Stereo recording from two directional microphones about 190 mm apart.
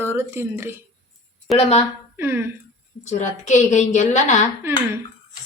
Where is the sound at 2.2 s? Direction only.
10° right (ahead or behind).